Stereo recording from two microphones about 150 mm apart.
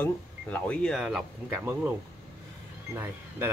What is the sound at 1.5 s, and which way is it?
Speech, 15° right (ahead or behind).